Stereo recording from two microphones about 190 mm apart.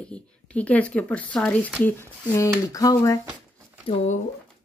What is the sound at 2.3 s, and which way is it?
Speech, 15° left (ahead or behind).